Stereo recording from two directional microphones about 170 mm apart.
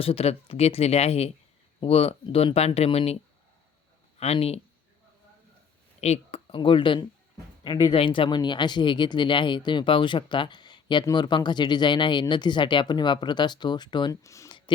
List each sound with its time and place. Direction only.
0.0 s speech: 35° left (ahead or behind)
4.2 s speech: 35° left (ahead or behind)
6.0 s speech: 40° left (ahead or behind); by 14.6 s 20° left (ahead or behind)